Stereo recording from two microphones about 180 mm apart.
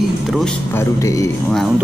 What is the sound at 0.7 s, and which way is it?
Speech, 20° left (ahead or behind).